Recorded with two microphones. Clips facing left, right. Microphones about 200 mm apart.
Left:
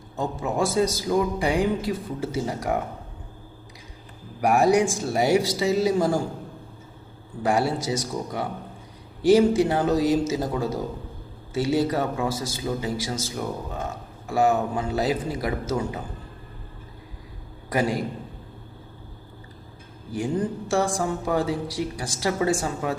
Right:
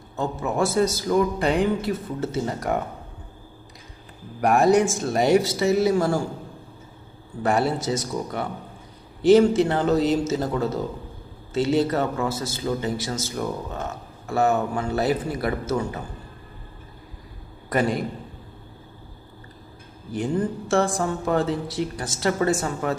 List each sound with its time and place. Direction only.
0.2 s a man's voice: 15° left (ahead or behind)
4.4 s a man's voice: 10° left (ahead or behind)
7.4 s a man's voice: 10° left (ahead or behind)
17.7 s a man's voice: 10° left (ahead or behind)
20.1 s a man's voice: 10° left (ahead or behind)